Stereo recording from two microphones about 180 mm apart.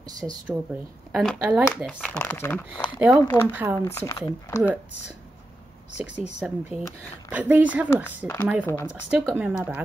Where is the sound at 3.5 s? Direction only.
10° right (ahead or behind).